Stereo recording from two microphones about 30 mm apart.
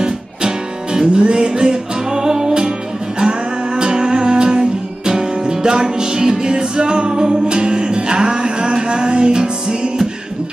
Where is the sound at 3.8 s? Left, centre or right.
Right.